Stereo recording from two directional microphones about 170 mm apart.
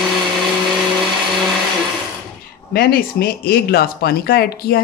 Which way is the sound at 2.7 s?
65° left (ahead or behind).